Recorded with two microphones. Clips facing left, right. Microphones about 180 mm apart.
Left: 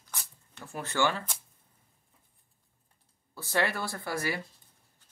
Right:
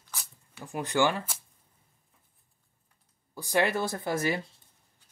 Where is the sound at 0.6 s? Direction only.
15° right (ahead or behind).